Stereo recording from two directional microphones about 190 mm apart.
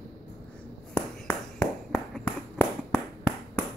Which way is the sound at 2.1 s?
Centre (ahead or behind).